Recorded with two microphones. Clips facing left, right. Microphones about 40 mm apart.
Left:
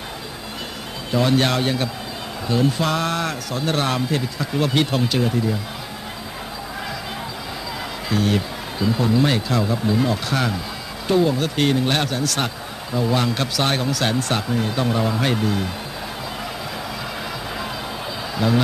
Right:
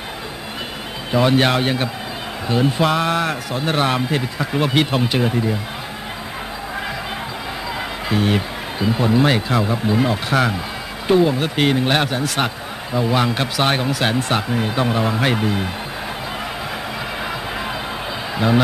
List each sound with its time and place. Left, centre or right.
1.1 s speech: right
8.1 s speech: right